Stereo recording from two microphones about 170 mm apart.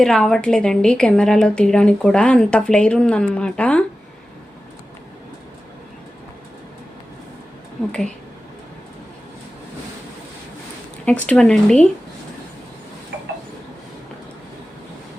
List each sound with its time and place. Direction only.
0.0 s a woman's voice: 5° left (ahead or behind)
11.0 s a woman's voice: 5° left (ahead or behind)